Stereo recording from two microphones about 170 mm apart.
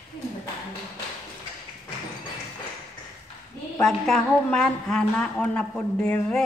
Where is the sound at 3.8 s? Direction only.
5° left (ahead or behind).